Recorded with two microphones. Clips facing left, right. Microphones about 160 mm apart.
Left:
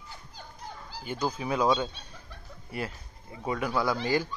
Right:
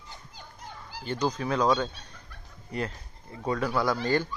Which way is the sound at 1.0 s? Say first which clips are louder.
Right 2 dB; 5° left (ahead or behind).